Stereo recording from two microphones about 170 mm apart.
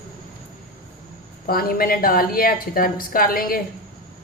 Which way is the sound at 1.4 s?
60° left (ahead or behind).